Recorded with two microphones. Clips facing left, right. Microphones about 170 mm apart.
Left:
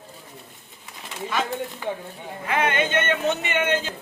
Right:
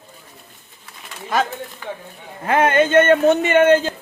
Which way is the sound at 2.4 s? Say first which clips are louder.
Right 8 dB; 45° right (ahead or behind).